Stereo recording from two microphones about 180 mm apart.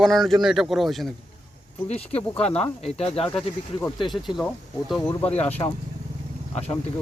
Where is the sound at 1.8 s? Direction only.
35° left (ahead or behind).